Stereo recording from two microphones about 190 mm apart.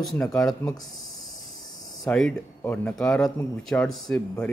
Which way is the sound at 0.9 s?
Centre (ahead or behind).